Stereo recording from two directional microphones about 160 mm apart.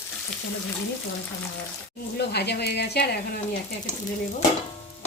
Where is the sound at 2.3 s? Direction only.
90° left.